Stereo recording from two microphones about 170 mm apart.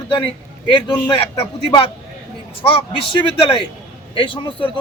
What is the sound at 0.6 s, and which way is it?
A man's voice, 30° left (ahead or behind).